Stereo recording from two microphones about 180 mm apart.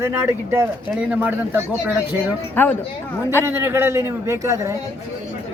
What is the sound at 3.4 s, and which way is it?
Speech, 15° right (ahead or behind).